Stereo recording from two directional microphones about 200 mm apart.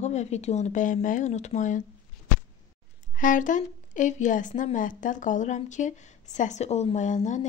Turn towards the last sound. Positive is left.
turn(degrees=35)  # may be behind; listen again after turning